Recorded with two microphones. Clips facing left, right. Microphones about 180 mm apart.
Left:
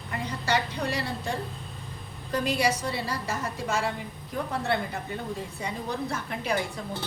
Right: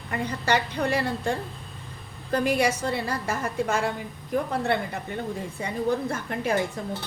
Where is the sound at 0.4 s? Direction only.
60° right (ahead or behind).